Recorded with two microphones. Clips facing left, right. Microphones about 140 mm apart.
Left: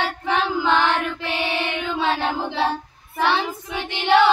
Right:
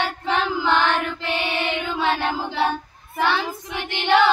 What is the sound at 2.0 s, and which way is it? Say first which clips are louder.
Child singing: left 1 dB; 25° left (ahead or behind).